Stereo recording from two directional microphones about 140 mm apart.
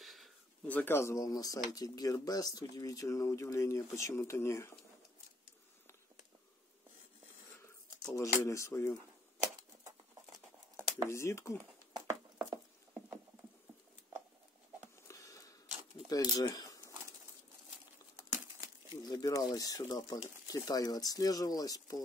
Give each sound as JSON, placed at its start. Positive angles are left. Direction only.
{"t": 0.0, "sound": "a sound", "side_deg": 0}
{"t": 0.7, "sound": "speech", "side_deg": 15}
{"t": 7.6, "sound": "a sound", "side_deg": 20}
{"t": 8.5, "sound": "speech", "side_deg": 20}
{"t": 11.1, "sound": "speech", "side_deg": 20}
{"t": 12.1, "sound": "horse", "side_deg": -10}
{"t": 15.0, "sound": "a sound", "side_deg": 25}
{"t": 16.1, "sound": "speech", "side_deg": 25}
{"t": 19.0, "sound": "speech", "side_deg": 25}